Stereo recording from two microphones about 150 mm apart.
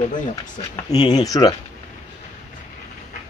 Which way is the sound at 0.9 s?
25° left (ahead or behind).